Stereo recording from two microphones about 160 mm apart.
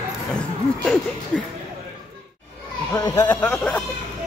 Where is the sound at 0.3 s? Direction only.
5° left (ahead or behind).